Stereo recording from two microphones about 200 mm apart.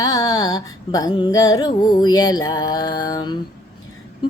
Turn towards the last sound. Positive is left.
turn(degrees=20)  # may be behind; listen again after turning